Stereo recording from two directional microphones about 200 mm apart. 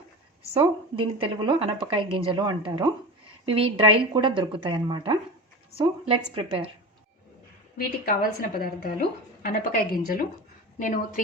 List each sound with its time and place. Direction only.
0.5 s a woman's voice: 25° right (ahead or behind)
7.8 s a woman's voice: 45° left (ahead or behind)